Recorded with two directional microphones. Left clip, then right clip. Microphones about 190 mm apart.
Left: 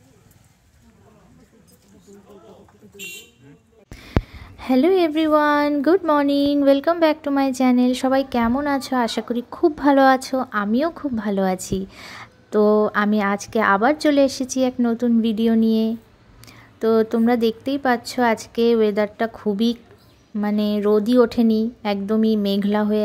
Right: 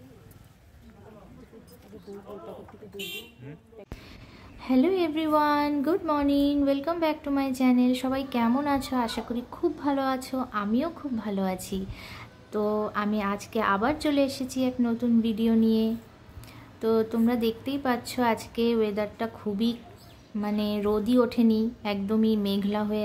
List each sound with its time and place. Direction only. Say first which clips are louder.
4.0 s a woman's voice: left 19 dB; 40° left (ahead or behind)